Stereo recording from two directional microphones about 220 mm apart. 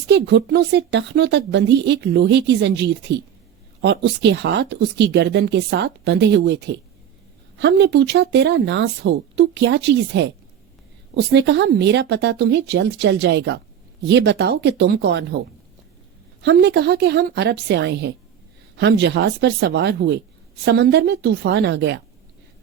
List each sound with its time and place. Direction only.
0.1 s a woman's voice: 50° right (ahead or behind)
16.4 s a woman's voice: 50° right (ahead or behind)